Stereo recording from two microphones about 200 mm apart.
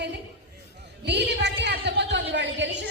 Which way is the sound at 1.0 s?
60° right (ahead or behind).